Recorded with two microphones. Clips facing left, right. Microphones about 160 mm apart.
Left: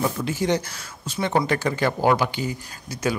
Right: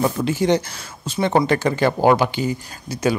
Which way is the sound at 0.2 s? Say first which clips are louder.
Right 5 dB; 75° right (ahead or behind).